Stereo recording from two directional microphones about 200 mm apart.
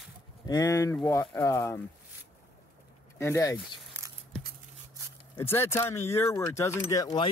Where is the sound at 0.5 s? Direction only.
15° left (ahead or behind).